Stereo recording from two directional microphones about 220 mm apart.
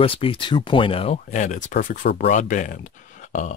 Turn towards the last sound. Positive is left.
turn(degrees=35)  # may be behind; listen again after turning